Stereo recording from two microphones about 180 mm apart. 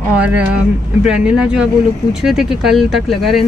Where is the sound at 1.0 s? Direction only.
5° right (ahead or behind).